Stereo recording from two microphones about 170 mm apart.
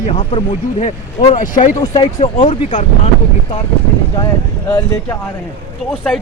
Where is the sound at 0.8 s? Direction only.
45° left (ahead or behind).